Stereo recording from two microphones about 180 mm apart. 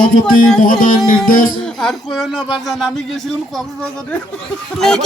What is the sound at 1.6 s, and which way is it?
Speech, 5° left (ahead or behind).